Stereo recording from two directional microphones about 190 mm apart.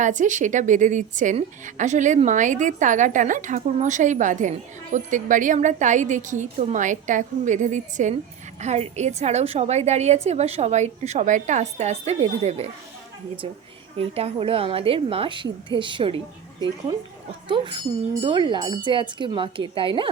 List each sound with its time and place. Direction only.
0.0 s a woman's voice: 40° right (ahead or behind)
14.0 s a woman's voice: 30° right (ahead or behind)
18.2 s a woman's voice: 25° right (ahead or behind)